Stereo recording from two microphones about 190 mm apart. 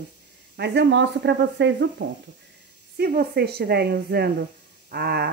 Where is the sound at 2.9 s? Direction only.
55° right (ahead or behind).